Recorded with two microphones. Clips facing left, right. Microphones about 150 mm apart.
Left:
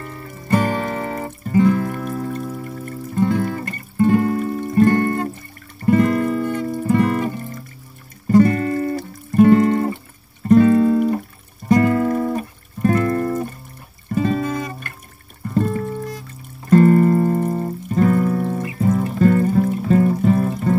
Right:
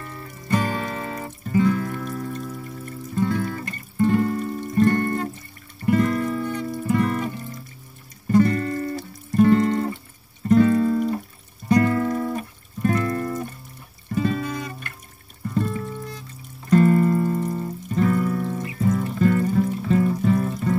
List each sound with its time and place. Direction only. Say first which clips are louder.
0.4 s music: left 5 dB; 45° left (ahead or behind)
8.3 s music: left 4 dB; 65° left (ahead or behind)